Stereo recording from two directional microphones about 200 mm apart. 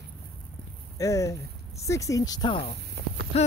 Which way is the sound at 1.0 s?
15° left (ahead or behind).